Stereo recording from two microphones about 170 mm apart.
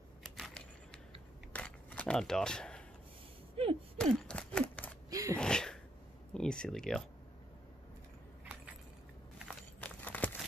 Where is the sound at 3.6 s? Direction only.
35° right (ahead or behind).